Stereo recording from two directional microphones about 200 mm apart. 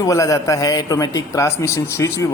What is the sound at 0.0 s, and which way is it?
A man's voice, 15° left (ahead or behind).